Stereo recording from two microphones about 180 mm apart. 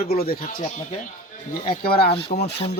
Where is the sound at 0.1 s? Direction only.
55° left (ahead or behind).